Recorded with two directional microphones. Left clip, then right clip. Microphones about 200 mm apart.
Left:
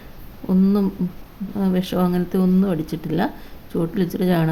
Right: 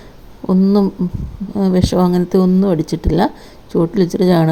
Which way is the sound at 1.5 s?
20° right (ahead or behind).